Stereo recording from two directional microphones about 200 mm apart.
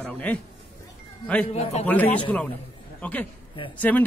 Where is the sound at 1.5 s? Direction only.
30° left (ahead or behind).